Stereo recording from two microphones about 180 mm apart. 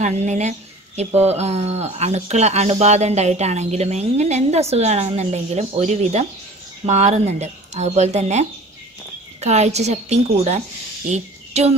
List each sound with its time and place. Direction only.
0.0 s speech: 40° right (ahead or behind)